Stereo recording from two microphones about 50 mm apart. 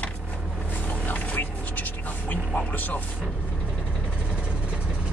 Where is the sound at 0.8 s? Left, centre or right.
Left.